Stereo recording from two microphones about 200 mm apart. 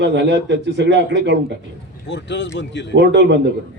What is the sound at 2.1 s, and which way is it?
Speech, 60° left (ahead or behind).